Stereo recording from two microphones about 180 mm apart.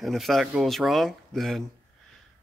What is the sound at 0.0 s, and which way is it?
Speech, centre (ahead or behind).